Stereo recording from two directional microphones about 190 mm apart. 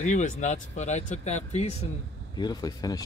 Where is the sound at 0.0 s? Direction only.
40° left (ahead or behind).